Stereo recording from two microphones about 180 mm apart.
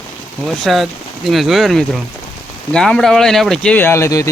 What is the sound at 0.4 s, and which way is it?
Speech, centre (ahead or behind).